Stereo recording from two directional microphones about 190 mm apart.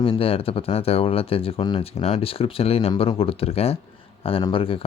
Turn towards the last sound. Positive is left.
turn(degrees=30)  # may be behind; listen again after turning